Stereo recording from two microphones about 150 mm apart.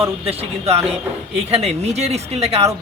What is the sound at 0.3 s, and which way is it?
A man's voice, 45° right (ahead or behind).